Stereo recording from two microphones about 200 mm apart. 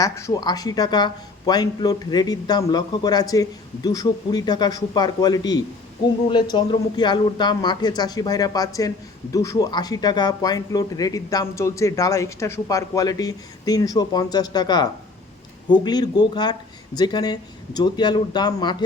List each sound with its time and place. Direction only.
0.0 s speech: 15° left (ahead or behind)